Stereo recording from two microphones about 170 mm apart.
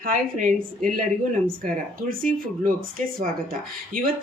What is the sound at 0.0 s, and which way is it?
Speech, 50° right (ahead or behind).